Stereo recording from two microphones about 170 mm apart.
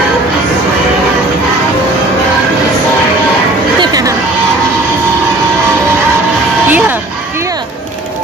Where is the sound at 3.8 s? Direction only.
20° right (ahead or behind).